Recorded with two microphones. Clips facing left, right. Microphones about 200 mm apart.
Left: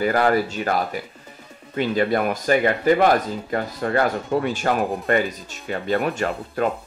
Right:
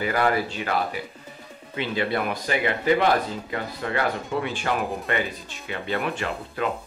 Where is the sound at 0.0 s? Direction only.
45° left (ahead or behind).